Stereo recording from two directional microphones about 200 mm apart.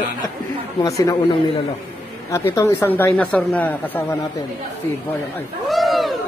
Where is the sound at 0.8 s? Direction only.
15° left (ahead or behind).